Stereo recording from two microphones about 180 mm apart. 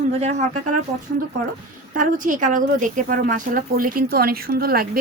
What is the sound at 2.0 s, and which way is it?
A woman's voice, 45° right (ahead or behind).